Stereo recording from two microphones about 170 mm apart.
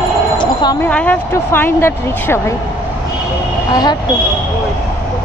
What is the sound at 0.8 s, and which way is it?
Speech, 10° left (ahead or behind).